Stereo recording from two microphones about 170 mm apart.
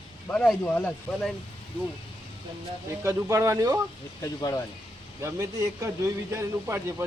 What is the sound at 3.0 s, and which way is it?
Speech, 20° right (ahead or behind).